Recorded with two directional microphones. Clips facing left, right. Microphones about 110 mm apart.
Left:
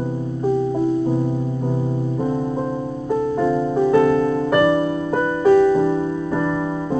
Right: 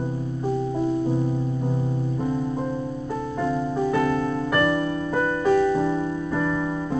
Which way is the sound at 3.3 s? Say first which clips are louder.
Left 4 dB; 10° left (ahead or behind).